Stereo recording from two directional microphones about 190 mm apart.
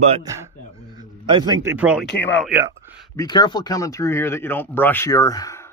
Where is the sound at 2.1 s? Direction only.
10° left (ahead or behind).